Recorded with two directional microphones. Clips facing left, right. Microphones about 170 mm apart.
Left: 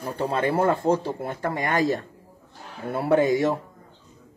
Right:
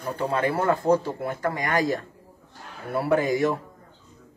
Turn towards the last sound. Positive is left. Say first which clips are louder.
# left 2 dB
turn(degrees=25)  # may be behind; listen again after turning